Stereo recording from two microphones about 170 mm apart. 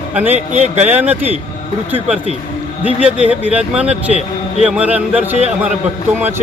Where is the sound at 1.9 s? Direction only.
5° right (ahead or behind).